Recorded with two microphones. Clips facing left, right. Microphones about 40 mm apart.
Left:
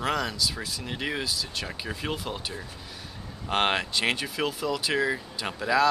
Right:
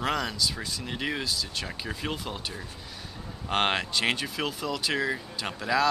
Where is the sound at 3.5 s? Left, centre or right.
Centre.